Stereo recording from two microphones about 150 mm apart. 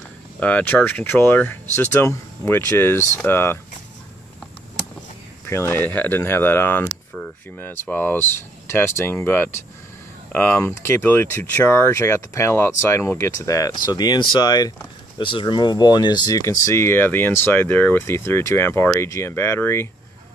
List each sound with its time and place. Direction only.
0.4 s speech: 10° left (ahead or behind)
5.5 s speech: 15° left (ahead or behind)